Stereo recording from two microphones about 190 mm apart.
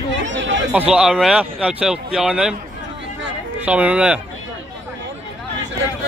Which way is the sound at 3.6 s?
5° right (ahead or behind).